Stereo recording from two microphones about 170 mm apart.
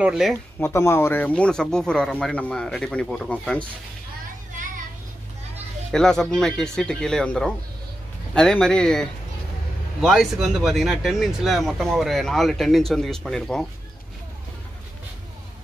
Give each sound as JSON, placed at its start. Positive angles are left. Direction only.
{"t": 0.0, "sound": "speech", "side_deg": -5}
{"t": 0.6, "sound": "speech", "side_deg": 15}
{"t": 4.6, "sound": "a sound", "side_deg": -50}
{"t": 5.9, "sound": "speech", "side_deg": 5}
{"t": 10.0, "sound": "speech", "side_deg": 0}